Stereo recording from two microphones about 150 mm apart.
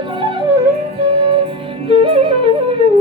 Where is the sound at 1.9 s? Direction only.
35° right (ahead or behind).